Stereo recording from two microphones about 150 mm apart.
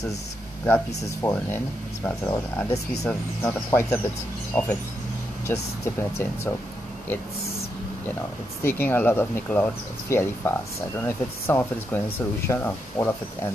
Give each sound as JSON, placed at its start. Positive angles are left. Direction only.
{"t": 1.2, "sound": "speech", "side_deg": 15}
{"t": 8.6, "sound": "speech", "side_deg": 15}